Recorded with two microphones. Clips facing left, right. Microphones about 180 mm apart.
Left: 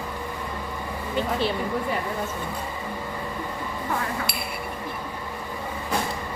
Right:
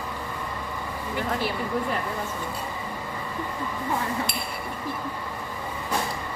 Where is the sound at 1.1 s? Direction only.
25° left (ahead or behind).